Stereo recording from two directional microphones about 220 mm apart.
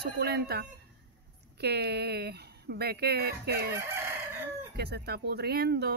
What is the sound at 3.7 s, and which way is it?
Crowing, 10° right (ahead or behind).